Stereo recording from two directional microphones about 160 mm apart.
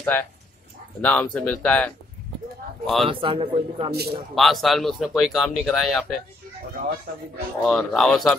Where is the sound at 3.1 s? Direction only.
35° right (ahead or behind).